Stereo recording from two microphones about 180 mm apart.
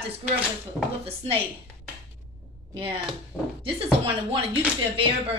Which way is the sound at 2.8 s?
30° right (ahead or behind).